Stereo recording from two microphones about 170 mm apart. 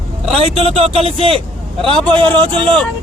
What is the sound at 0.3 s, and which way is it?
Speech, 35° right (ahead or behind).